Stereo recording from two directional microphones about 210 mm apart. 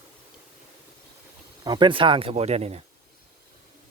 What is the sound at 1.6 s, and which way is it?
Speech, 20° right (ahead or behind).